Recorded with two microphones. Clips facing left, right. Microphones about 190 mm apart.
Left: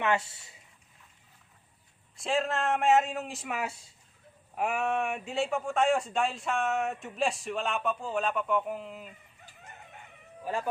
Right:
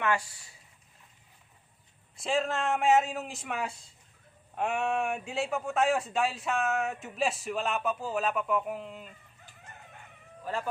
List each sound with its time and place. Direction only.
0.0 s speech: 25° left (ahead or behind)
2.1 s a man's voice: centre (ahead or behind)
10.4 s speech: 15° left (ahead or behind)